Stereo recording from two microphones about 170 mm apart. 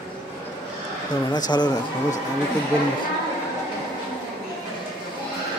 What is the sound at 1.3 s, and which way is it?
Speech, 25° left (ahead or behind).